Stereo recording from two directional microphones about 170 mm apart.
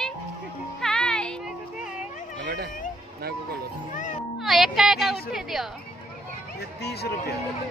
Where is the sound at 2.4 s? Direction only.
75° right (ahead or behind).